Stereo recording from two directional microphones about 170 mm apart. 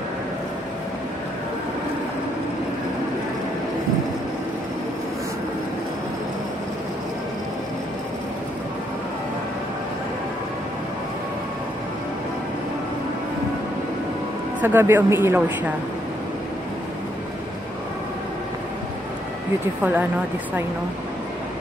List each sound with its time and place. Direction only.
14.6 s speech: 10° right (ahead or behind)
19.8 s speech: 10° right (ahead or behind)